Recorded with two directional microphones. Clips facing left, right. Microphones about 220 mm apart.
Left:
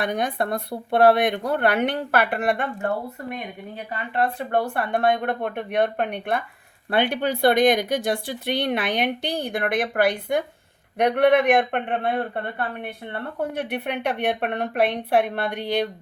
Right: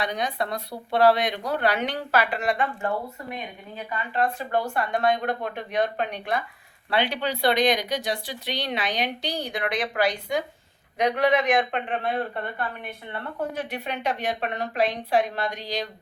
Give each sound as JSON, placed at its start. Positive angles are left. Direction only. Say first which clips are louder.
{"t": 0.0, "sound": "speech", "louder": "left 3 dB", "side_deg": 55}
{"t": 4.2, "sound": "speech", "louder": "left 2 dB", "side_deg": 60}